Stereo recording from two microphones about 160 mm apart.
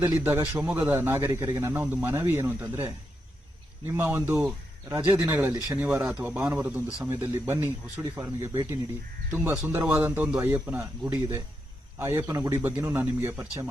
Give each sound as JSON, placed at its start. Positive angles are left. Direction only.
{"t": 0.3, "sound": "speech", "side_deg": -10}
{"t": 5.9, "sound": "speech", "side_deg": 0}